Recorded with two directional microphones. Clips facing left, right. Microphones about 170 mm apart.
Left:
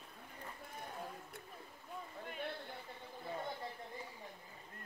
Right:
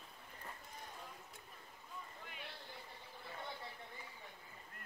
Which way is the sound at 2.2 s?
45° left (ahead or behind).